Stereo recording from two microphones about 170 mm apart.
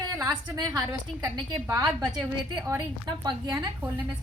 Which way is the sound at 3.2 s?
20° right (ahead or behind).